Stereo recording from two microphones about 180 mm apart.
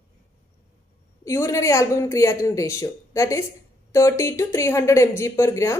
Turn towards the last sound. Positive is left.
turn(degrees=15)  # may be behind; listen again after turning